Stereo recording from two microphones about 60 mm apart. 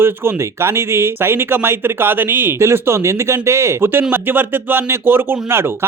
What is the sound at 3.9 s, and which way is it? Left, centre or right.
Speech, right.